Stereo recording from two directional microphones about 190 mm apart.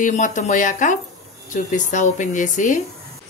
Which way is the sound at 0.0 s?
40° left (ahead or behind).